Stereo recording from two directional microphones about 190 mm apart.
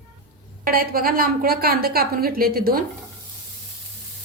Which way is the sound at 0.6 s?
50° right (ahead or behind).